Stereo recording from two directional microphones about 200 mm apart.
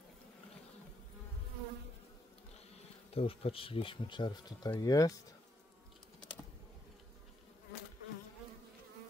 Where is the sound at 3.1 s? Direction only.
30° left (ahead or behind).